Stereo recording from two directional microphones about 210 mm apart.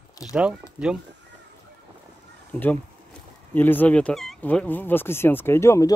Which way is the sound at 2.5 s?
10° left (ahead or behind).